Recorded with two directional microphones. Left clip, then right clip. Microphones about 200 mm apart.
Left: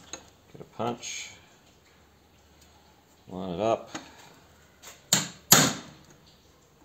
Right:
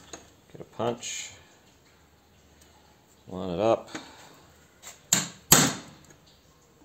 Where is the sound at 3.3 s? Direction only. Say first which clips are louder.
Right 2 dB; 45° right (ahead or behind).